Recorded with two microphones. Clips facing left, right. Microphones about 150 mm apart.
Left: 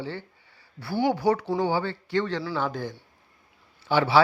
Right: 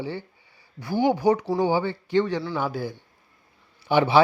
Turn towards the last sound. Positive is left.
turn(degrees=-20)  # may be behind; listen again after turning